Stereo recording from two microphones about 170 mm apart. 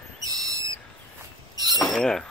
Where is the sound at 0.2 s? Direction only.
20° right (ahead or behind).